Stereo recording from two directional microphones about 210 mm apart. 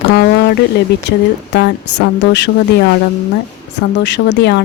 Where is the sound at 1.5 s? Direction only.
55° left (ahead or behind).